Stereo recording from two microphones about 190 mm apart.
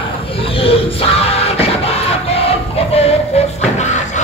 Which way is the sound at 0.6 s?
30° left (ahead or behind).